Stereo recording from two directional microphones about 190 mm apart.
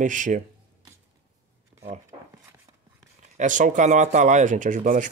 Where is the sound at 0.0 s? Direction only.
40° right (ahead or behind).